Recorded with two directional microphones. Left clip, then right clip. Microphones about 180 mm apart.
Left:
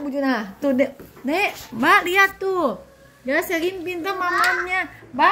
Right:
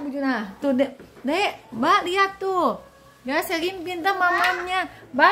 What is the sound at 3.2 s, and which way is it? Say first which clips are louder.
A child's voice: left 3 dB; 25° right (ahead or behind).